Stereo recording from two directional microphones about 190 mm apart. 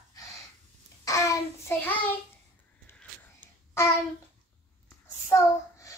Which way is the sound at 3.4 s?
15° left (ahead or behind).